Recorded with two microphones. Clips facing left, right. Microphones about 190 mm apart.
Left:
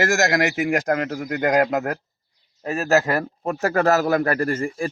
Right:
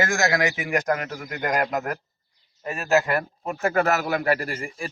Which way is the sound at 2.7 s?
40° left (ahead or behind).